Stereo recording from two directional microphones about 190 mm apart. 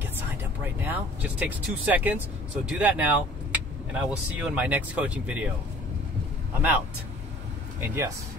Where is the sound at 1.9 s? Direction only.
10° right (ahead or behind).